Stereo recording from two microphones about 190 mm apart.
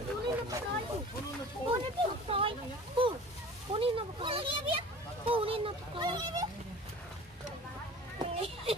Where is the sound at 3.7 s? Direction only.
30° right (ahead or behind).